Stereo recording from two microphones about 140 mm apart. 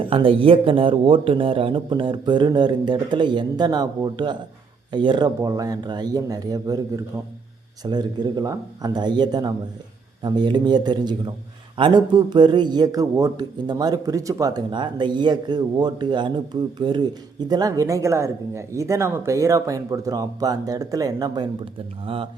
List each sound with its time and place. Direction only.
0.1 s a man's voice: 40° right (ahead or behind)